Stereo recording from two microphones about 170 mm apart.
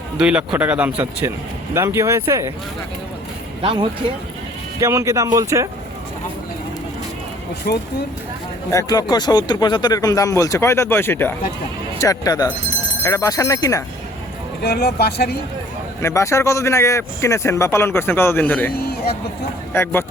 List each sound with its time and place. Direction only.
0.2 s speech: 5° right (ahead or behind)
3.6 s speech: 30° right (ahead or behind)
4.8 s speech: 15° right (ahead or behind)
7.7 s speech: 65° left (ahead or behind)
8.7 s speech: 20° left (ahead or behind)
14.6 s speech: 70° left (ahead or behind)
16.0 s speech: 15° left (ahead or behind)
18.7 s speech: 60° left (ahead or behind)
19.7 s speech: 15° left (ahead or behind)